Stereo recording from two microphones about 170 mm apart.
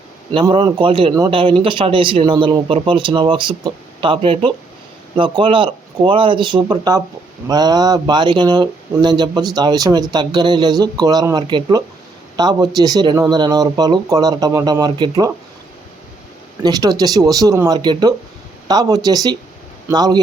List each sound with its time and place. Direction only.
0.5 s a man's voice: 30° right (ahead or behind)
16.6 s speech: 20° right (ahead or behind)